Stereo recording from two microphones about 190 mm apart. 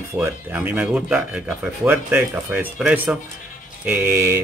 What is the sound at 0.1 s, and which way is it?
Speech, 10° right (ahead or behind).